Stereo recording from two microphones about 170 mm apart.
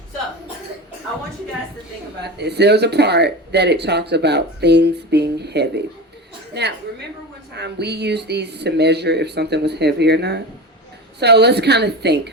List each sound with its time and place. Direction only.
2.2 s a woman's voice: 80° right